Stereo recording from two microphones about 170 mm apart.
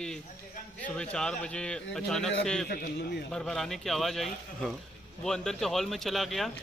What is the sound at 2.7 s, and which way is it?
Speech, 70° left (ahead or behind).